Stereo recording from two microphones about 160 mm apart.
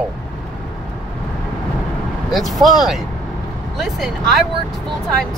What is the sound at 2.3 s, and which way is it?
Speech, centre (ahead or behind).